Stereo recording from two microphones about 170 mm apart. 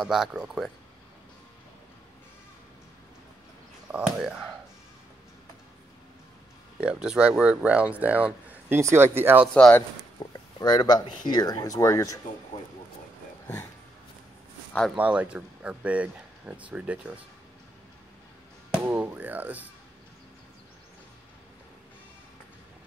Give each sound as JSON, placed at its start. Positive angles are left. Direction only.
{"t": 0.0, "sound": "speech", "side_deg": 0}
{"t": 3.9, "sound": "speech", "side_deg": -5}
{"t": 6.8, "sound": "speech", "side_deg": -5}
{"t": 9.5, "sound": "speech", "side_deg": 10}
{"t": 10.1, "sound": "speech", "side_deg": 25}
{"t": 15.0, "sound": "speech", "side_deg": -5}
{"t": 18.8, "sound": "music", "side_deg": -10}